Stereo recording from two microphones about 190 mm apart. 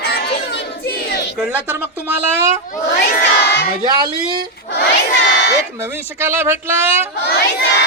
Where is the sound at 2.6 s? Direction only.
40° left (ahead or behind).